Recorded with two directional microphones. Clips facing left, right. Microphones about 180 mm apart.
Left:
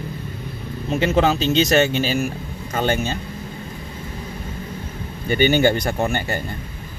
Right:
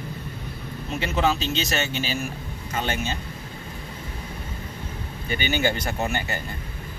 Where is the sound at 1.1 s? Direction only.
40° left (ahead or behind).